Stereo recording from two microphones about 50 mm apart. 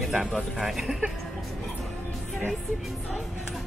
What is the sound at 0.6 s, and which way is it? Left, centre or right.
Music, centre.